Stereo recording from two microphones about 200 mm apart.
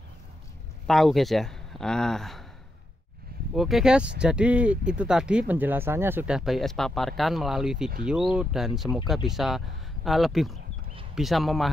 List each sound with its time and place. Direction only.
0.8 s speech: centre (ahead or behind)
3.5 s speech: centre (ahead or behind)